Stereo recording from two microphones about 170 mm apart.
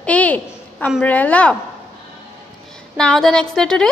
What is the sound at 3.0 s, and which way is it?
Speech, 5° left (ahead or behind).